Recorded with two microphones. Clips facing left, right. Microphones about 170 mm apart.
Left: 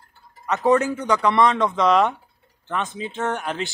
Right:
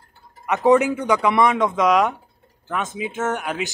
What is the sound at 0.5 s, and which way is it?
Speech, 15° right (ahead or behind).